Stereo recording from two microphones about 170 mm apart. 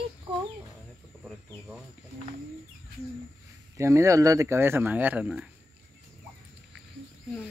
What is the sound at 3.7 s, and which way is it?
Speech, 15° right (ahead or behind).